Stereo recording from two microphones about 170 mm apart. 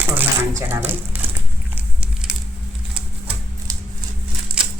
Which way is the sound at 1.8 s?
5° right (ahead or behind).